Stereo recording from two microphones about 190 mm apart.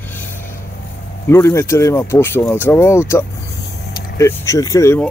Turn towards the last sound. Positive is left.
turn(degrees=15)  # may be behind; listen again after turning